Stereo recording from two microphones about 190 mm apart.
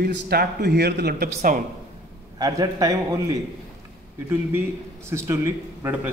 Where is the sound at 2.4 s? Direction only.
20° right (ahead or behind).